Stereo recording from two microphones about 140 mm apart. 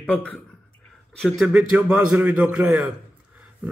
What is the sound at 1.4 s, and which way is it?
A man's voice, 5° right (ahead or behind).